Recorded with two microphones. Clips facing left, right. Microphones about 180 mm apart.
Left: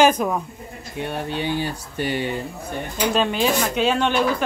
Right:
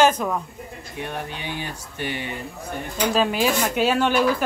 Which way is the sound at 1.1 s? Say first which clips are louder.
Left 8 dB; 30° left (ahead or behind).